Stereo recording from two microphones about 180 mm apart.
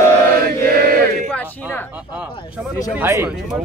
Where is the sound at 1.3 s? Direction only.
10° left (ahead or behind).